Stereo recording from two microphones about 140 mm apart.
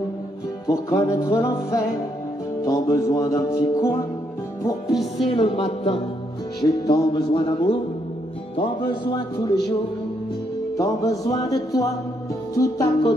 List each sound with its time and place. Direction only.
0.7 s music: 25° left (ahead or behind)
5.3 s speech: 45° left (ahead or behind)
6.6 s music: 30° left (ahead or behind)
10.8 s music: 25° left (ahead or behind)